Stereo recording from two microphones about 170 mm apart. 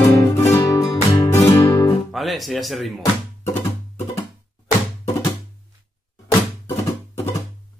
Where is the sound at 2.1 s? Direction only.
Centre (ahead or behind).